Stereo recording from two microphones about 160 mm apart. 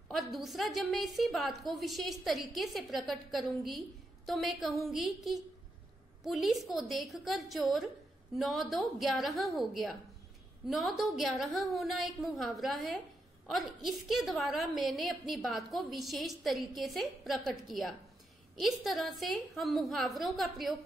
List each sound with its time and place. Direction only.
0.1 s a woman's voice: centre (ahead or behind)